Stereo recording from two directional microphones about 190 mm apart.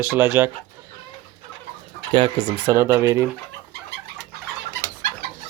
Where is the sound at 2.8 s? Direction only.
15° right (ahead or behind).